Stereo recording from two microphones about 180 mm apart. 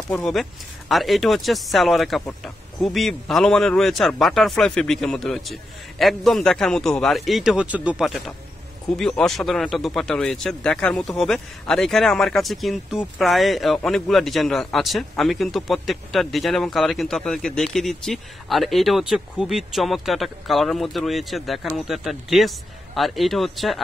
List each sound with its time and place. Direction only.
0.1 s speech: centre (ahead or behind)